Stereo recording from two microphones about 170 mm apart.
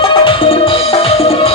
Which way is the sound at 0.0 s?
30° left (ahead or behind).